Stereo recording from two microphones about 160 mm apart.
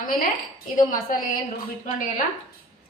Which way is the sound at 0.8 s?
55° left (ahead or behind).